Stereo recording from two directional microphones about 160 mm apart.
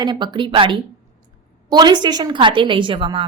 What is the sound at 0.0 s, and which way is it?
A woman's voice, 30° right (ahead or behind).